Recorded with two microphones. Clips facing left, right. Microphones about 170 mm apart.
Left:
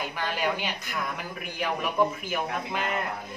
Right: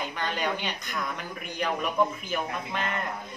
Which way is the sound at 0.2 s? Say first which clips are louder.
Left 2 dB; 5° left (ahead or behind).